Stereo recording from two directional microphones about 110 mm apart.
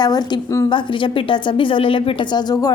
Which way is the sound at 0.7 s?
45° left (ahead or behind).